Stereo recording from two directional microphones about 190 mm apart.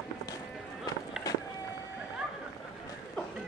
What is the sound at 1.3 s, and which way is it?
Run, 20° left (ahead or behind).